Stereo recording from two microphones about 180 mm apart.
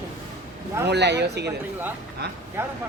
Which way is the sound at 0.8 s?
70° right (ahead or behind).